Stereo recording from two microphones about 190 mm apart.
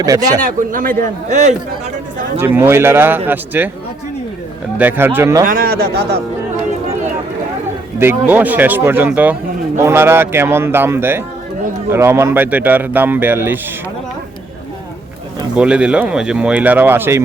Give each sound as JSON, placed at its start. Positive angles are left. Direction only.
{"t": 0.0, "sound": "speech", "side_deg": -20}
{"t": 0.4, "sound": "a man's voice", "side_deg": -45}
{"t": 2.4, "sound": "a man's voice", "side_deg": -10}
{"t": 4.8, "sound": "a man's voice", "side_deg": -10}
{"t": 5.5, "sound": "a man's voice", "side_deg": -50}
{"t": 7.9, "sound": "a man's voice", "side_deg": -10}
{"t": 15.5, "sound": "speech", "side_deg": -5}